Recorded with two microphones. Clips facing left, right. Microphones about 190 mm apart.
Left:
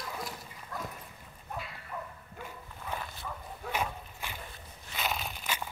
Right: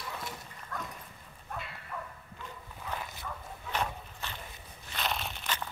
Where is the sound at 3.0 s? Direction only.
5° left (ahead or behind).